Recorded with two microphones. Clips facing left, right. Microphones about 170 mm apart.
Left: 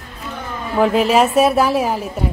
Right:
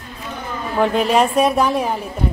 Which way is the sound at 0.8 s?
5° left (ahead or behind).